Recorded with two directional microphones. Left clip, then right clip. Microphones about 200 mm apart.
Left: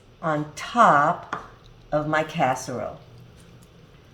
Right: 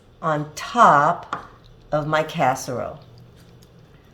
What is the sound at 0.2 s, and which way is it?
A woman's voice, 40° right (ahead or behind).